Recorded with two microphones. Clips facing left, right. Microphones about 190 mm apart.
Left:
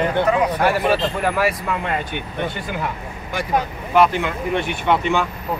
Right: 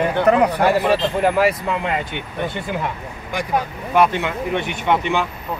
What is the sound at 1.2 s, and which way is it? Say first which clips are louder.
Speech: right 3 dB; 25° right (ahead or behind).